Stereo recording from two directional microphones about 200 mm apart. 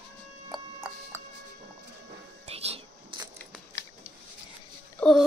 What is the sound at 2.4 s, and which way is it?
Whispering, 30° right (ahead or behind).